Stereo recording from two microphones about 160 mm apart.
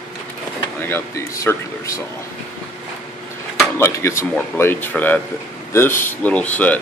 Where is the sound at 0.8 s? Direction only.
15° left (ahead or behind).